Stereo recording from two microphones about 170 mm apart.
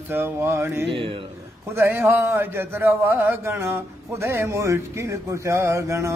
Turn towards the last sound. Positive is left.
turn(degrees=-15)  # may be behind; listen again after turning